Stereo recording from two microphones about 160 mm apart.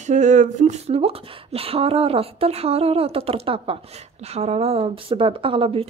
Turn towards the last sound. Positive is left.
turn(degrees=-35)  # may be behind; listen again after turning